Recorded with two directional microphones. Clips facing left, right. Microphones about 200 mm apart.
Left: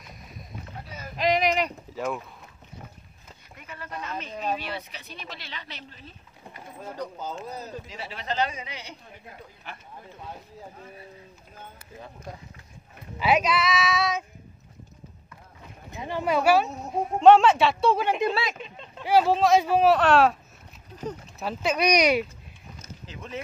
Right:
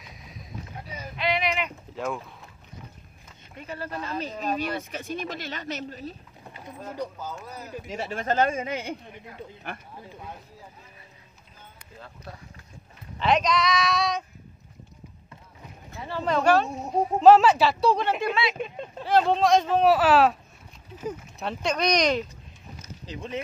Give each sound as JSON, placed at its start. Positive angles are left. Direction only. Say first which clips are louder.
{"t": 0.0, "sound": "boat", "louder": "even", "side_deg": 0}
{"t": 1.1, "sound": "a sound", "louder": "left 4 dB", "side_deg": 40}
{"t": 2.0, "sound": "speech", "louder": "left 1 dB", "side_deg": 0}
{"t": 3.5, "sound": "speech", "louder": "right 5 dB", "side_deg": -30}
{"t": 7.2, "sound": "speech", "louder": "left 3 dB", "side_deg": 20}
{"t": 7.9, "sound": "speech", "louder": "right 8 dB", "side_deg": -50}
{"t": 13.2, "sound": "speech", "louder": "even", "side_deg": 5}
{"t": 15.9, "sound": "speech", "louder": "left 1 dB", "side_deg": 15}
{"t": 18.3, "sound": "speech", "louder": "right 2 dB", "side_deg": 45}
{"t": 18.6, "sound": "speech", "louder": "right 8 dB", "side_deg": -50}
{"t": 19.0, "sound": "speech", "louder": "left 1 dB", "side_deg": 5}
{"t": 21.4, "sound": "speech", "louder": "left 2 dB", "side_deg": 5}